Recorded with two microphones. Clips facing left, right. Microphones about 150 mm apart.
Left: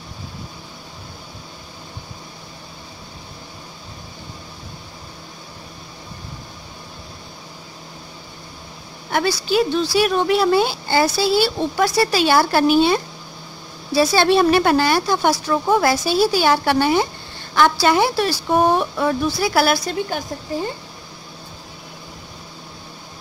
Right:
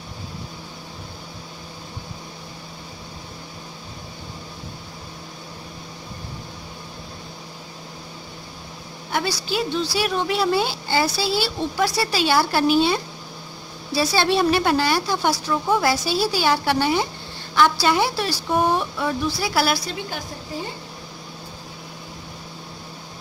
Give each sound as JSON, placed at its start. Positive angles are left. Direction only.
{"t": 9.1, "sound": "speech", "side_deg": 55}